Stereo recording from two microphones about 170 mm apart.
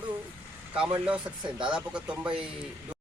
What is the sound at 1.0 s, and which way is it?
Speech, 5° right (ahead or behind).